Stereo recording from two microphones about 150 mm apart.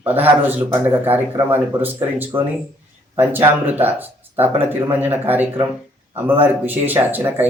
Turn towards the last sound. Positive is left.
turn(degrees=-15)  # may be behind; listen again after turning